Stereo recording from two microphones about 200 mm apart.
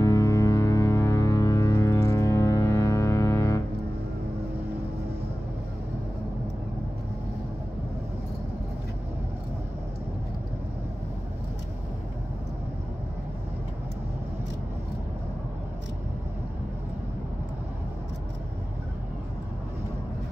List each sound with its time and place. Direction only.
0.0 s ship: 15° left (ahead or behind)